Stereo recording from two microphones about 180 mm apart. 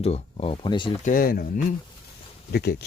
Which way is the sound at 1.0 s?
50° left (ahead or behind).